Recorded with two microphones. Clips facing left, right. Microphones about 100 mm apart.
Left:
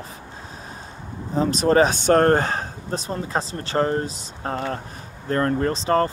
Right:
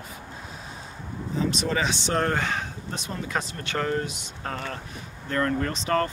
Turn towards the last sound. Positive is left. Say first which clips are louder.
# left 5 dB
turn(degrees=35)  # may be behind; listen again after turning